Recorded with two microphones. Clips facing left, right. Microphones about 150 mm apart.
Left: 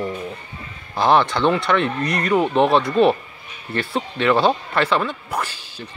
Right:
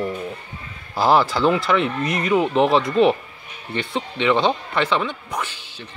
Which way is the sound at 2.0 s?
25° right (ahead or behind).